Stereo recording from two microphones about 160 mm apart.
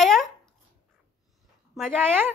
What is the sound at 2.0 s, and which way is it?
Speech, 15° right (ahead or behind).